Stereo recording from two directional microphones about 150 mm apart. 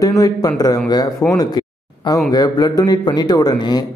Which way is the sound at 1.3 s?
25° left (ahead or behind).